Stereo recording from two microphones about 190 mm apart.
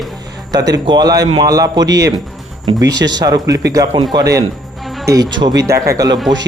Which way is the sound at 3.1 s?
20° right (ahead or behind).